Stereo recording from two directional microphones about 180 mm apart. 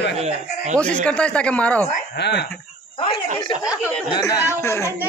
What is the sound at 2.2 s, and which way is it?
Music, 70° left (ahead or behind).